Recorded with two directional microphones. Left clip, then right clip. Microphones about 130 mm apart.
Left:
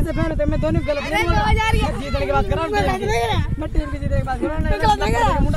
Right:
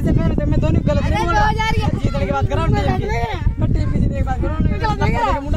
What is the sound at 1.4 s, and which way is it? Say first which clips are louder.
Speech: right 1 dB; 20° left (ahead or behind).